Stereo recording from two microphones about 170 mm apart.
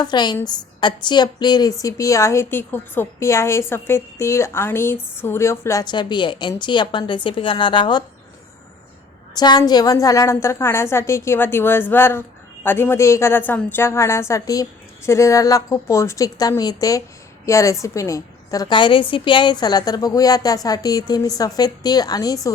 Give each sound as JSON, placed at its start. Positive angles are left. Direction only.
{"t": 0.0, "sound": "a woman's voice", "side_deg": 25}
{"t": 9.3, "sound": "a woman's voice", "side_deg": 25}